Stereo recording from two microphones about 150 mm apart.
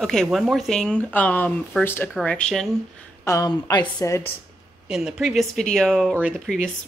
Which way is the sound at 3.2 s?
25° left (ahead or behind).